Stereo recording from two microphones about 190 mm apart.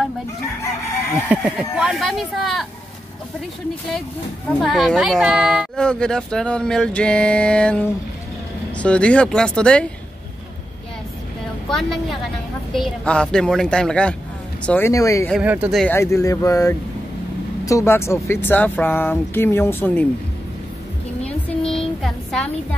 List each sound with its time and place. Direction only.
1.3 s speech: 5° right (ahead or behind)
4.5 s speech: centre (ahead or behind)
11.7 s speech: centre (ahead or behind)
15.4 s speech: 10° right (ahead or behind)
15.8 s speech: 10° left (ahead or behind)
21.5 s a sound: 5° left (ahead or behind)